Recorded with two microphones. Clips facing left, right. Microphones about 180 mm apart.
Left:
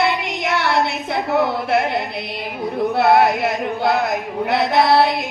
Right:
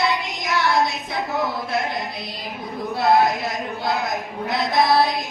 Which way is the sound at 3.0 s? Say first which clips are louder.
Left 3 dB; 65° left (ahead or behind).